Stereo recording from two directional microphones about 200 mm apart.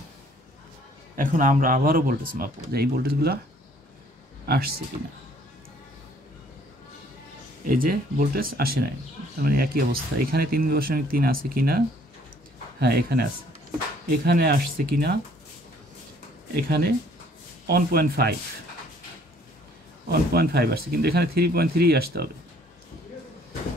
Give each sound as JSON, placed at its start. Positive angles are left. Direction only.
{"t": 1.1, "sound": "speech", "side_deg": -40}
{"t": 4.5, "sound": "speech", "side_deg": -50}
{"t": 7.6, "sound": "speech", "side_deg": -45}
{"t": 12.8, "sound": "speech", "side_deg": -50}
{"t": 16.5, "sound": "speech", "side_deg": -50}
{"t": 20.1, "sound": "speech", "side_deg": -50}